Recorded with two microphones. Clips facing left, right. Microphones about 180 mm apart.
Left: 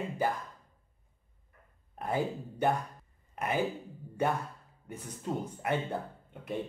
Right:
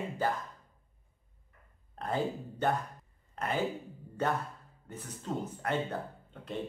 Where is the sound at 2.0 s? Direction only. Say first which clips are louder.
Left 1 dB; 10° left (ahead or behind).